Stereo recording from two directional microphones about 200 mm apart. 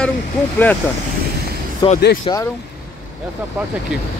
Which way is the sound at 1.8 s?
20° left (ahead or behind).